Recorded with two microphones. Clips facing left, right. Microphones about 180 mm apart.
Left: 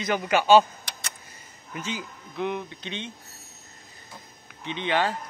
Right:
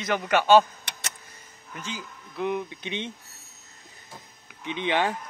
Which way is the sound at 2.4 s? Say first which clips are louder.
Right 1 dB; 5° right (ahead or behind).